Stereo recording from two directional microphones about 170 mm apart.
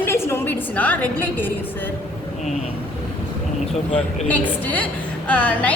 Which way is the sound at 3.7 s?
35° left (ahead or behind).